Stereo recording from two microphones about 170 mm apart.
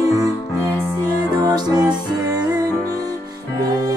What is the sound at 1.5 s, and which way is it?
Music, 25° right (ahead or behind).